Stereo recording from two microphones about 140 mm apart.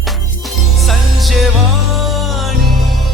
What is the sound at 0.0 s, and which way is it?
Music, centre (ahead or behind).